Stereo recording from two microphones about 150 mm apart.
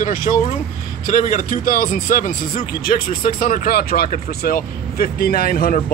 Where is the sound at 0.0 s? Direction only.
70° left (ahead or behind).